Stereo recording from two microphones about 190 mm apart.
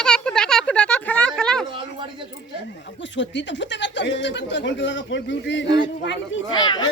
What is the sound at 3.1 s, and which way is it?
Speech, 70° left (ahead or behind).